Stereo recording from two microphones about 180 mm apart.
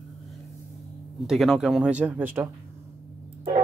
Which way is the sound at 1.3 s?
Centre (ahead or behind).